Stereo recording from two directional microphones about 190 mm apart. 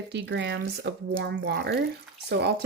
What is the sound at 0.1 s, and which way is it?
Speech, 65° right (ahead or behind).